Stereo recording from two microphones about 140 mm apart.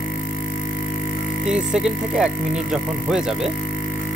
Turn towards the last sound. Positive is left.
turn(degrees=-5)  # may be behind; listen again after turning